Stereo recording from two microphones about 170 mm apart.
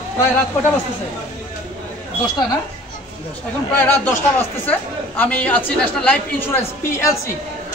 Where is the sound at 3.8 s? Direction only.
10° left (ahead or behind).